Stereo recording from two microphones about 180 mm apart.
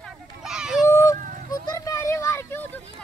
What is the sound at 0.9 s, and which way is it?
Honk, 15° left (ahead or behind).